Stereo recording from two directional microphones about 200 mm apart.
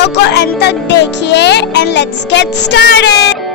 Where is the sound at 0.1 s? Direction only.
55° left (ahead or behind).